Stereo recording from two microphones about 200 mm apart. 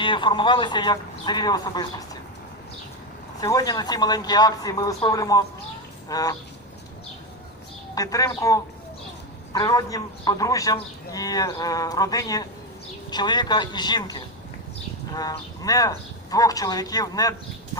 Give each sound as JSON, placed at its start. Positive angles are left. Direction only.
{"t": 0.0, "sound": "a man's voice", "side_deg": 25}
{"t": 3.4, "sound": "a man's voice", "side_deg": 20}
{"t": 7.9, "sound": "a man's voice", "side_deg": 15}